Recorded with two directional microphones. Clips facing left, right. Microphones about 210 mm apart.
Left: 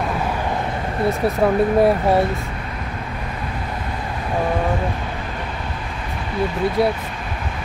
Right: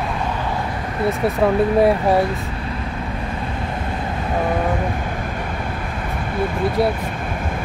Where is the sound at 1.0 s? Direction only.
Centre (ahead or behind).